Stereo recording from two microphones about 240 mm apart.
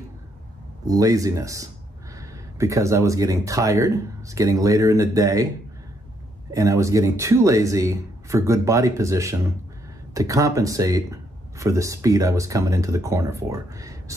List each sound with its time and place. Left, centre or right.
0.8 s speech: centre
6.5 s speech: centre